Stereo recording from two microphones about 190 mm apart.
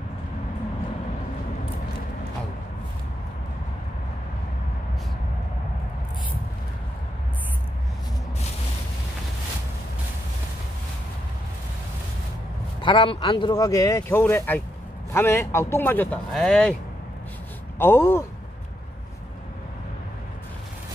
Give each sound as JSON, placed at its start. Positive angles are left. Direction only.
{"t": 12.8, "sound": "speech", "side_deg": 25}
{"t": 17.7, "sound": "speech", "side_deg": 10}